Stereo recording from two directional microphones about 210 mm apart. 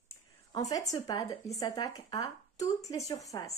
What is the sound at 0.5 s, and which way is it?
Speech, 15° left (ahead or behind).